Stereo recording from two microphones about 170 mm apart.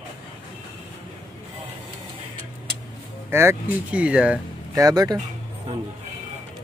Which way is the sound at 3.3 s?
15° right (ahead or behind).